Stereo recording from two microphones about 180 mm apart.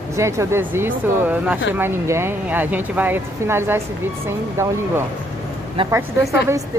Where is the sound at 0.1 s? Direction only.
15° right (ahead or behind).